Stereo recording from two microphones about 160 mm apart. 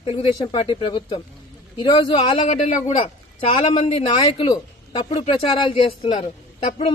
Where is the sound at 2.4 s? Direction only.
45° left (ahead or behind).